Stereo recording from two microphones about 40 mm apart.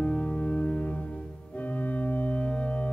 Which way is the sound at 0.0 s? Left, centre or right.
Left.